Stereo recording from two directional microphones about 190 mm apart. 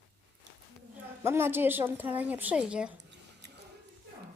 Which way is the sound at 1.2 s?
10° right (ahead or behind).